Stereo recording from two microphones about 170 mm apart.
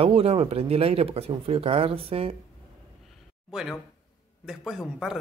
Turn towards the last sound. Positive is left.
turn(degrees=0)  # may be behind; listen again after turning